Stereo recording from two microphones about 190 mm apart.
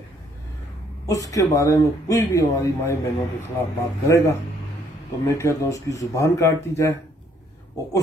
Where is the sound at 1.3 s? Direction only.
15° left (ahead or behind).